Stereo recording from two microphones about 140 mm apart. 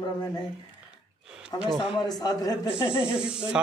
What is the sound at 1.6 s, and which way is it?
Speech, 5° right (ahead or behind).